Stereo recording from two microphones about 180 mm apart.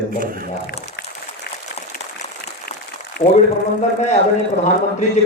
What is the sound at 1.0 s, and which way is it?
Applause, 55° left (ahead or behind).